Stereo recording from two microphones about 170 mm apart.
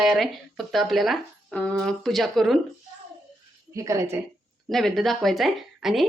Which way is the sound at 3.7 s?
20° right (ahead or behind).